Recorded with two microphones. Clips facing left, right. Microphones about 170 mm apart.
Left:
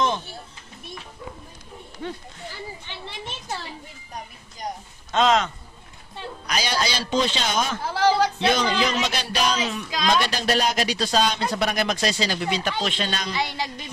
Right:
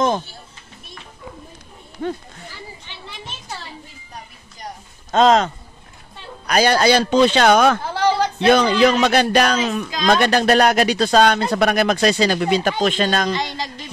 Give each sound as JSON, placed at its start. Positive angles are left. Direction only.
{"t": 2.0, "sound": "speech", "side_deg": -50}
{"t": 5.1, "sound": "a man's voice", "side_deg": -40}
{"t": 6.4, "sound": "speech", "side_deg": -55}
{"t": 7.9, "sound": "a sound", "side_deg": 5}
{"t": 8.5, "sound": "speech", "side_deg": -60}
{"t": 13.3, "sound": "speech", "side_deg": 10}